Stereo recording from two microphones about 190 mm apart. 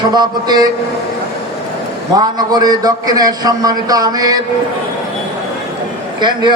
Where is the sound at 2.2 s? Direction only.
20° right (ahead or behind).